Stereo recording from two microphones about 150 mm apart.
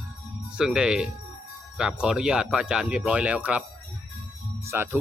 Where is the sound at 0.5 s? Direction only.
5° right (ahead or behind).